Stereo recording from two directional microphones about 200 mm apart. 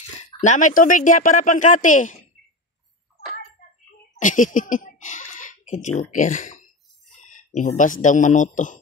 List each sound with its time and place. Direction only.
0.4 s speech: 40° left (ahead or behind)
4.2 s speech: 40° left (ahead or behind)
7.2 s a sound: 40° left (ahead or behind)
7.7 s speech: 40° left (ahead or behind)